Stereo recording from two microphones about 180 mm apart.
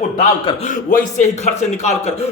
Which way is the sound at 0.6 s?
45° left (ahead or behind).